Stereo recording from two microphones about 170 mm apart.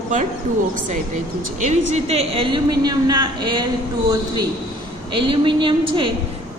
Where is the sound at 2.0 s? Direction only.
35° right (ahead or behind).